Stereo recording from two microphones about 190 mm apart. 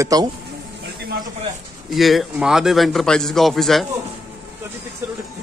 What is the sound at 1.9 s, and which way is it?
A man's voice, centre (ahead or behind).